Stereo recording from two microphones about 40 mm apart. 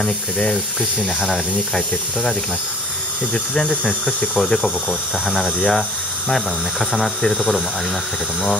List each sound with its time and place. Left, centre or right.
0.0 s speech: centre
4.2 s speech: centre
5.2 s speech: centre